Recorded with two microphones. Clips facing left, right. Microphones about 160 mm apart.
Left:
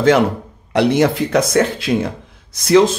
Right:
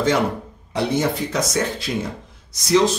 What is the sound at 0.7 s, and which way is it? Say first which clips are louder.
Speech: left 7 dB; 75° left (ahead or behind).